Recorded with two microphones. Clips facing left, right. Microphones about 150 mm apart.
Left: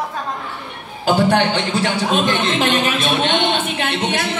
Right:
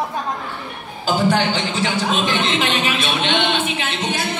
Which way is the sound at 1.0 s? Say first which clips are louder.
Left 3 dB; 60° left (ahead or behind).